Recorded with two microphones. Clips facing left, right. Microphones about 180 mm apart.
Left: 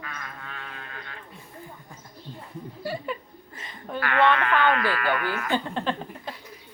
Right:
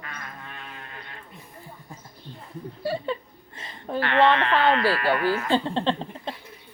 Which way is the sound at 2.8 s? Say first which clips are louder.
Right 4 dB; 30° right (ahead or behind).